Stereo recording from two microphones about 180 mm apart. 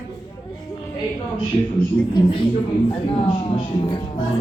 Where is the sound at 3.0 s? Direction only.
30° left (ahead or behind).